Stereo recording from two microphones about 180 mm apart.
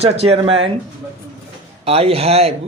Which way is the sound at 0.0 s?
35° right (ahead or behind).